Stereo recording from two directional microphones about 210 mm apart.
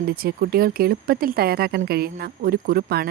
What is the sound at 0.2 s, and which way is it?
Speech, 45° right (ahead or behind).